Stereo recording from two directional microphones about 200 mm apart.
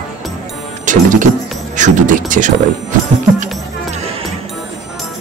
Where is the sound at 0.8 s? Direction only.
40° right (ahead or behind).